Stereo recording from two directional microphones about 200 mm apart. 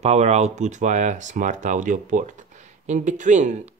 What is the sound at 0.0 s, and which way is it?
Speech, 35° right (ahead or behind).